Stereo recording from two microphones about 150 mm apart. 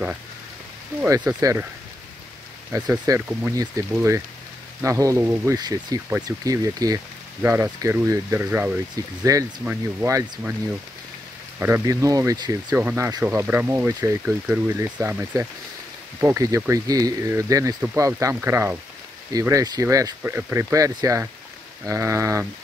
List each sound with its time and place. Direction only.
1.4 s speech: 20° right (ahead or behind)
2.7 s speech: 15° right (ahead or behind)
5.6 s speech: 25° right (ahead or behind)
8.9 s speech: 20° right (ahead or behind)
11.6 s speech: 20° right (ahead or behind)
12.7 s speech: 15° right (ahead or behind)